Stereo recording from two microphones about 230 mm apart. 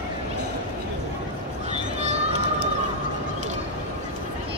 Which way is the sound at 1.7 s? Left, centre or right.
Right.